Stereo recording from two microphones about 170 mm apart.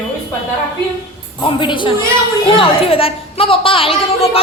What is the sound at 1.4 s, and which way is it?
A woman's voice, 30° left (ahead or behind).